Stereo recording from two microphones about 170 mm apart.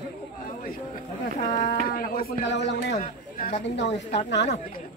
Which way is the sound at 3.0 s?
50° left (ahead or behind).